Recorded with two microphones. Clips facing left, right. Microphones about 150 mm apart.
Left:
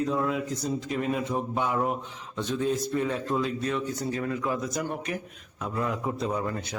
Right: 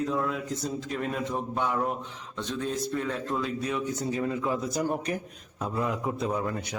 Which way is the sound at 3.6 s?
10° right (ahead or behind).